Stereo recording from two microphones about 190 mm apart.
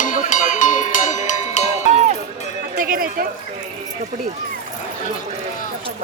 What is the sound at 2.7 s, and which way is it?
Speech, 50° right (ahead or behind).